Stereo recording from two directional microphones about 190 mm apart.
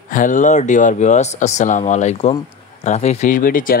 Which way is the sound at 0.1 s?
45° left (ahead or behind).